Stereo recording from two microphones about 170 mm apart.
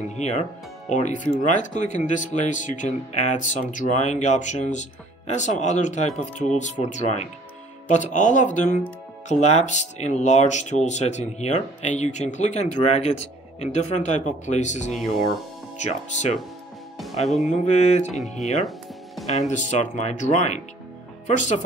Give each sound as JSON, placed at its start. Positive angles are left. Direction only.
{"t": 0.1, "sound": "speech", "side_deg": 40}
{"t": 17.3, "sound": "music", "side_deg": 0}
{"t": 17.6, "sound": "speech", "side_deg": 40}
{"t": 19.2, "sound": "speech", "side_deg": 45}